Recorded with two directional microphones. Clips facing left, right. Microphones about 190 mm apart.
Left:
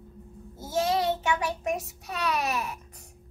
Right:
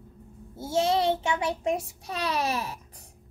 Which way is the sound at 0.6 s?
25° right (ahead or behind).